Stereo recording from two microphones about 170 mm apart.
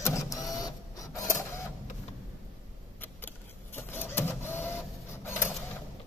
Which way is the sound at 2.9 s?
10° left (ahead or behind).